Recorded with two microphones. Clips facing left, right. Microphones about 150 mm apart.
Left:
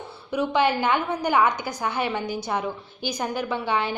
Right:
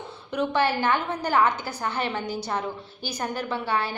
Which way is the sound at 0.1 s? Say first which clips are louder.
Left 2 dB; 10° left (ahead or behind).